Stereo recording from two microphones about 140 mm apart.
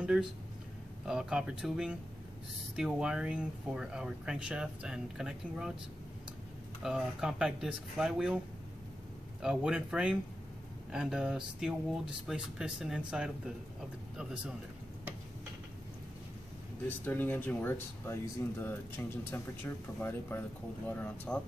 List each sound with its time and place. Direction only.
1.0 s speech: 5° right (ahead or behind)
6.8 s speech: 5° right (ahead or behind)
9.4 s speech: 5° right (ahead or behind)
17.0 s speech: 15° left (ahead or behind)